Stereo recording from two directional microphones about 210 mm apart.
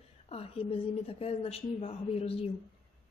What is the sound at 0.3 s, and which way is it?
A woman's voice, 30° left (ahead or behind).